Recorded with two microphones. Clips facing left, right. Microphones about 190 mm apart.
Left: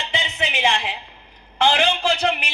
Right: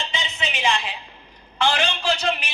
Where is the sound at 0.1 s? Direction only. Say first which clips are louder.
Left 4 dB; 60° left (ahead or behind).